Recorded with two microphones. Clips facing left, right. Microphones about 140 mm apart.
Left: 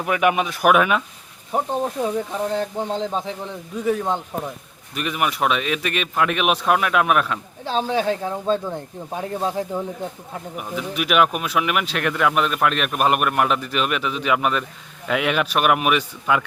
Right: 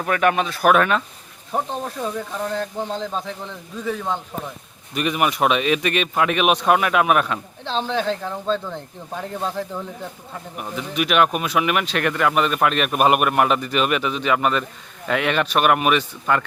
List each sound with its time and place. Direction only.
0.0 s speech: 10° left (ahead or behind)
4.9 s speech: centre (ahead or behind)
7.6 s speech: 10° left (ahead or behind)
10.6 s speech: 5° left (ahead or behind)